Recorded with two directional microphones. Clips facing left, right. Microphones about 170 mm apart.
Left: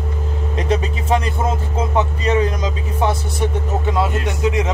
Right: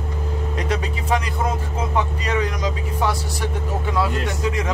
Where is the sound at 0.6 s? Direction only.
25° left (ahead or behind).